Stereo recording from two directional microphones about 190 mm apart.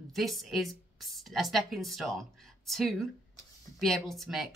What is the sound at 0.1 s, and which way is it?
Speech, centre (ahead or behind).